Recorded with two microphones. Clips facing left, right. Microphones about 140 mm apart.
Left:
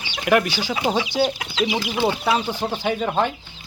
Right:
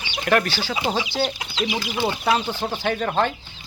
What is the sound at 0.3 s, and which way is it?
Speech, 10° left (ahead or behind).